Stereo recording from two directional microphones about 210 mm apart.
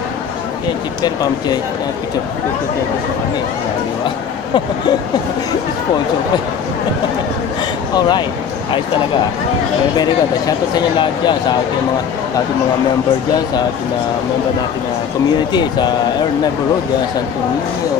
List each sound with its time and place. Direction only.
1.0 s speech: 20° left (ahead or behind)
9.9 s speech: 20° left (ahead or behind)
15.5 s speech: 20° left (ahead or behind)